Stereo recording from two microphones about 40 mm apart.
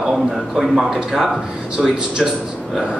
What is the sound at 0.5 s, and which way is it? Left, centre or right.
Speech, centre.